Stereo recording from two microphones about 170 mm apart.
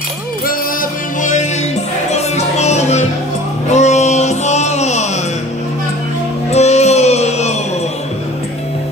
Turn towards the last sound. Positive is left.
turn(degrees=40)  # may be behind; listen again after turning